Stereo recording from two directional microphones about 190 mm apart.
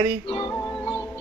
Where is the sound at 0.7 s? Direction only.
5° left (ahead or behind).